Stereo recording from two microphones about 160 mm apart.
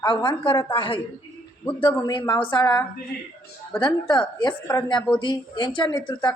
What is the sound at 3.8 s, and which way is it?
A woman's voice, 30° left (ahead or behind).